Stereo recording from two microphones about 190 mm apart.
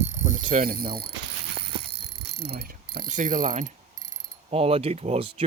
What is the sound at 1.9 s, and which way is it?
Pulleys, 60° right (ahead or behind).